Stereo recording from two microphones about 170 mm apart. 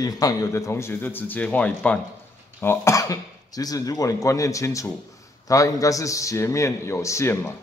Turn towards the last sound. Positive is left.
turn(degrees=15)  # may be behind; listen again after turning